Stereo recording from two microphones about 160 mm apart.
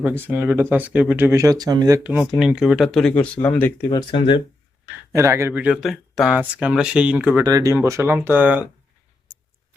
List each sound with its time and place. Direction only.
0.2 s speech: 15° right (ahead or behind)
2.0 s speech: 5° right (ahead or behind); by 3.8 s 10° left (ahead or behind)
3.8 s speech: 30° left (ahead or behind)
5.1 s speech: 15° right (ahead or behind)
5.7 s speech: centre (ahead or behind)
7.4 s speech: 20° right (ahead or behind)